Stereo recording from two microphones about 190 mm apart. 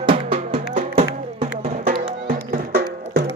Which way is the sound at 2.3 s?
50° right (ahead or behind).